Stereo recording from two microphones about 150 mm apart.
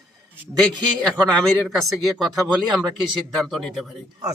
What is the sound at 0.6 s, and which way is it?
Speech, 5° left (ahead or behind).